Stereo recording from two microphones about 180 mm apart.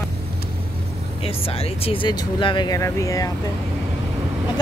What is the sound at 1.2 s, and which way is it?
Speech, 30° left (ahead or behind).